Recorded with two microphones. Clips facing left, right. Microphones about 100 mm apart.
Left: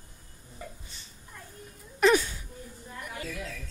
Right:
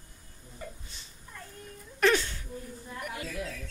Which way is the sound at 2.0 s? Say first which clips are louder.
Left 3 dB; 10° left (ahead or behind).